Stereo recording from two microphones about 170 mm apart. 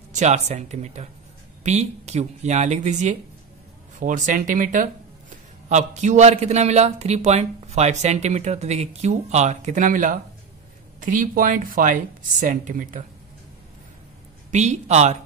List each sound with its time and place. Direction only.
0.1 s a man's voice: 40° right (ahead or behind)
14.5 s speech: 45° right (ahead or behind)